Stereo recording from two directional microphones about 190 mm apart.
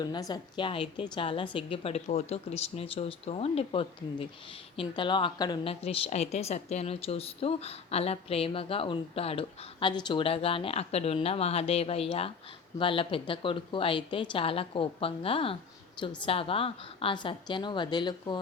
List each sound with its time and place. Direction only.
0.0 s a woman's voice: 20° left (ahead or behind)